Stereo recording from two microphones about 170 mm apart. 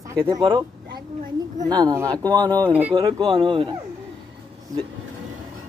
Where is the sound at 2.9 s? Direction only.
25° right (ahead or behind).